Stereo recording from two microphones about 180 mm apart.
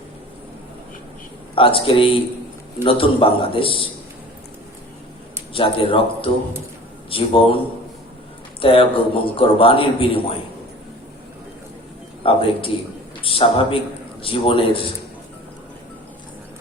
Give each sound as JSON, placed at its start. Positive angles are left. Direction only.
{"t": 1.5, "sound": "a man's voice", "side_deg": 30}
{"t": 5.5, "sound": "a man's voice", "side_deg": 30}
{"t": 8.6, "sound": "a man's voice", "side_deg": 30}
{"t": 12.2, "sound": "a man's voice", "side_deg": 30}